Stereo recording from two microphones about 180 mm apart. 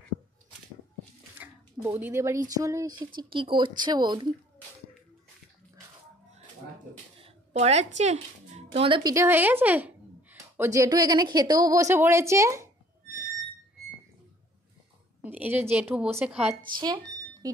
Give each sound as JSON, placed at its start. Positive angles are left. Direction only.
{"t": 1.4, "sound": "a woman's voice", "side_deg": -10}
{"t": 3.2, "sound": "speech", "side_deg": -30}
{"t": 7.2, "sound": "a sound", "side_deg": -35}
{"t": 8.0, "sound": "speech", "side_deg": -40}
{"t": 9.1, "sound": "a woman's voice", "side_deg": -15}
{"t": 15.2, "sound": "a woman's voice", "side_deg": -10}
{"t": 16.8, "sound": "smoke detector", "side_deg": -25}